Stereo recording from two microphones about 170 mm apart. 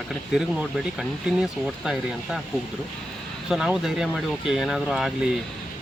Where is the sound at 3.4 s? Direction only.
5° right (ahead or behind).